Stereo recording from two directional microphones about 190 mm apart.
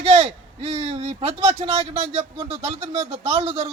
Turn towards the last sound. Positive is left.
turn(degrees=-35)  # may be behind; listen again after turning